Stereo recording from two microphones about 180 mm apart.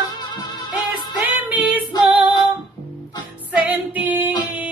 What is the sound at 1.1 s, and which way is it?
Music, 10° right (ahead or behind).